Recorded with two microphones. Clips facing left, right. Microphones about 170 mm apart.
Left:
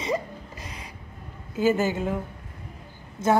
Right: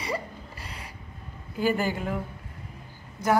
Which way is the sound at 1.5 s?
20° left (ahead or behind).